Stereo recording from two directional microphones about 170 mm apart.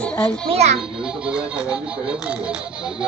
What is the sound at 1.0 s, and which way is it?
Speech, 5° right (ahead or behind).